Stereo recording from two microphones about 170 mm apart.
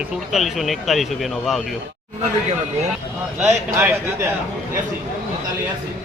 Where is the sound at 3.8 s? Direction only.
15° right (ahead or behind).